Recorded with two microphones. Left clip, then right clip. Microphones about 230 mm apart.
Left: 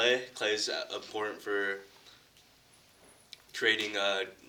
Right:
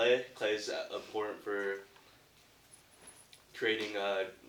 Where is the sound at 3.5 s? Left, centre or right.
Left.